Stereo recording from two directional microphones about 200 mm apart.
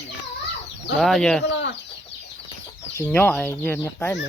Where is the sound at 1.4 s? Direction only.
60° left (ahead or behind).